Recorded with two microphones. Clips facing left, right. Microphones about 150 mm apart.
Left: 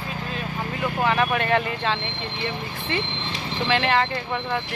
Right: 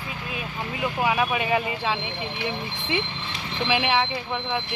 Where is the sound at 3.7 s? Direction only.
5° right (ahead or behind).